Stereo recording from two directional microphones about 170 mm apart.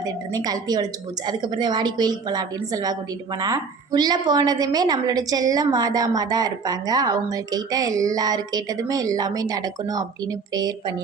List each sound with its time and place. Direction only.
0.0 s a woman's voice: 20° right (ahead or behind)